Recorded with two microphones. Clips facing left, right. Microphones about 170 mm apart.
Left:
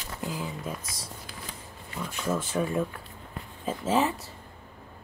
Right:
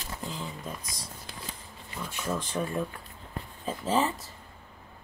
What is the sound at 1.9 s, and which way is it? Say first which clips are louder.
Speech: left 3 dB; centre (ahead or behind).